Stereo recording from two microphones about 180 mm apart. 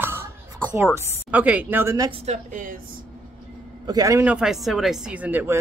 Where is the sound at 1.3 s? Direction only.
10° right (ahead or behind).